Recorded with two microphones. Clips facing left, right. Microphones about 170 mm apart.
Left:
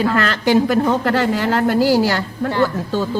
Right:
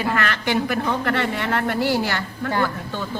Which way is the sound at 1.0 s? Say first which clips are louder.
Left 6 dB; 30° left (ahead or behind).